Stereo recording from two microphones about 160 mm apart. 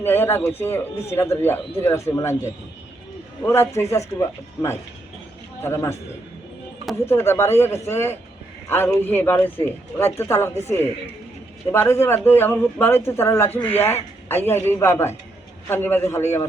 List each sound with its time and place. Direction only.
0.0 s a man's voice: 15° left (ahead or behind)
11.7 s a man's voice: 15° left (ahead or behind)